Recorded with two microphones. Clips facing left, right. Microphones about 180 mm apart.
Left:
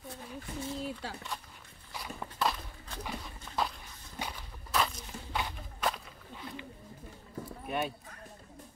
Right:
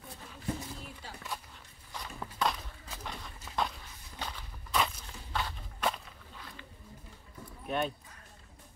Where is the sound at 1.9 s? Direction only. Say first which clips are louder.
Left 1 dB; 5° left (ahead or behind).